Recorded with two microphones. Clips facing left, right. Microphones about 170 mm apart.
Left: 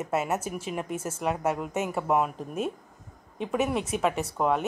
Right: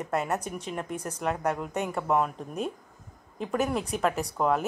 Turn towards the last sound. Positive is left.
turn(degrees=0)  # may be behind; listen again after turning